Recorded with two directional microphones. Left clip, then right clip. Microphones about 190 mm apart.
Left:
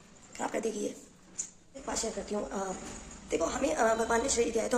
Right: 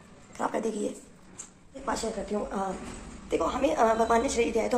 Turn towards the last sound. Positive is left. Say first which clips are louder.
# right 3 dB
turn(degrees=15)  # may be behind; listen again after turning